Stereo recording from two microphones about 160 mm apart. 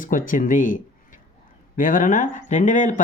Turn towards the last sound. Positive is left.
turn(degrees=50)  # may be behind; listen again after turning